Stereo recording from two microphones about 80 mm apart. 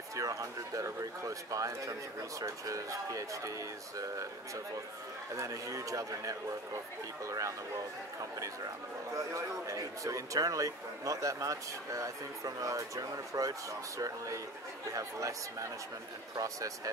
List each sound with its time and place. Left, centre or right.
0.1 s speech: right
5.3 s speech: right
9.1 s speech: right